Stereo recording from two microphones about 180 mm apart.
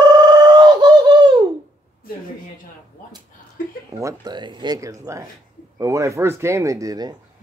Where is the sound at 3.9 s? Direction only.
20° right (ahead or behind).